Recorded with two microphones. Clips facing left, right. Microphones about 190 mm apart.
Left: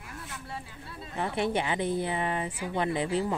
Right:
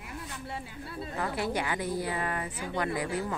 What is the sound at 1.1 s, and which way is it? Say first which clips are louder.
A woman's voice: left 3 dB; 25° left (ahead or behind).